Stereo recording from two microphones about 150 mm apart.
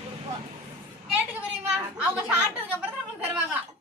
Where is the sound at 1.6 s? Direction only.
10° right (ahead or behind).